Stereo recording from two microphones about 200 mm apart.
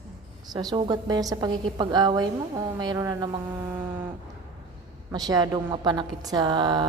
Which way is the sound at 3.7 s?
10° right (ahead or behind).